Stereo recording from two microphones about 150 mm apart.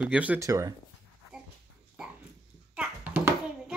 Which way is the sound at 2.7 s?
10° right (ahead or behind).